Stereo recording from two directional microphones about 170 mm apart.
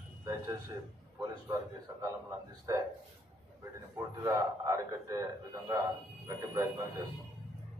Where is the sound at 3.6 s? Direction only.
20° right (ahead or behind).